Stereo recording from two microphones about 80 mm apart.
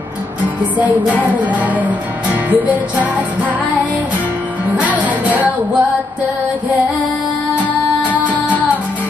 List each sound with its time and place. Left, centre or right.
0.7 s music: centre
4.8 s music: centre